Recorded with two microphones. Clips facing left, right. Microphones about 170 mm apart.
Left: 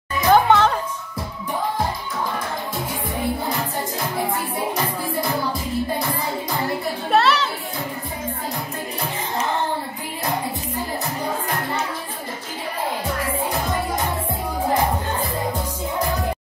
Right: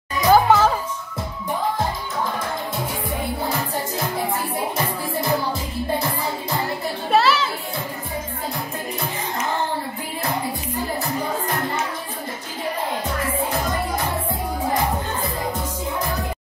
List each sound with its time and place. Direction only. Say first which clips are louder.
0.3 s music: even; 5° right (ahead or behind)
7.1 s children playing: even; centre (ahead or behind)